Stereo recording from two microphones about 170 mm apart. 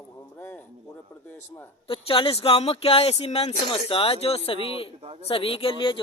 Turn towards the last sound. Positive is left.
turn(degrees=30)  # may be behind; listen again after turning